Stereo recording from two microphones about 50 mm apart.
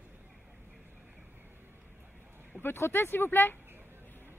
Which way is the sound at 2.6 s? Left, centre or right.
Left.